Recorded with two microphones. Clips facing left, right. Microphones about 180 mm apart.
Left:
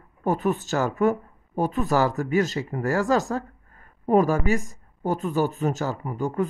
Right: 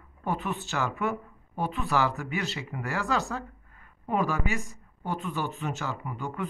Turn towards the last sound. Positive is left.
turn(degrees=40)  # may be behind; listen again after turning